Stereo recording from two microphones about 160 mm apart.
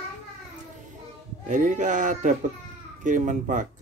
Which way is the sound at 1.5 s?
50° right (ahead or behind).